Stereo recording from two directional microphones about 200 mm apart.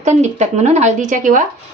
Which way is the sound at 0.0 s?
35° right (ahead or behind).